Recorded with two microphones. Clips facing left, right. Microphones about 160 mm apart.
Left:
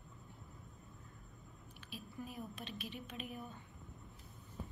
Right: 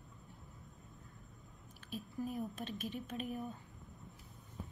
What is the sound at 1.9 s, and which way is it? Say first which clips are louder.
A woman's voice: right 7 dB; 45° right (ahead or behind).